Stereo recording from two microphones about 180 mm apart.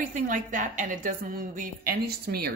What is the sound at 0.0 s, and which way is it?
A woman's voice, 45° right (ahead or behind).